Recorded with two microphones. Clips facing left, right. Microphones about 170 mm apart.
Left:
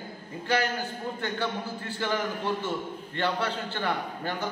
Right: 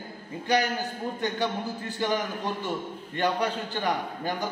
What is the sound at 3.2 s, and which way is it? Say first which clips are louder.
A man's voice: right 2 dB; 15° right (ahead or behind).